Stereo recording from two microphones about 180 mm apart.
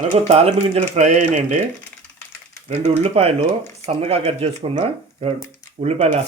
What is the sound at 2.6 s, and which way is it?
Speech, 35° right (ahead or behind).